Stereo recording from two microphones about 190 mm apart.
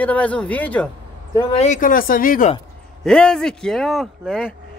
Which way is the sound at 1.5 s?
40° left (ahead or behind).